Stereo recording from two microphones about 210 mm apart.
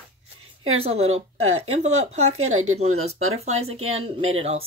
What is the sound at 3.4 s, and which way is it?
Speech, 30° right (ahead or behind).